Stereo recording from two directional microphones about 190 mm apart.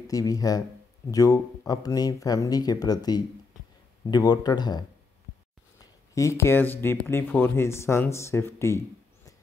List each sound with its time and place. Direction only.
0.1 s speech: 20° left (ahead or behind)